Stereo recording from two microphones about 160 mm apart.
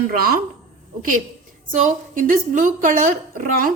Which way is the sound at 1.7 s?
55° right (ahead or behind).